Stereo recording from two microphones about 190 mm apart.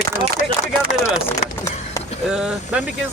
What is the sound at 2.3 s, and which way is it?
Speech, 5° right (ahead or behind).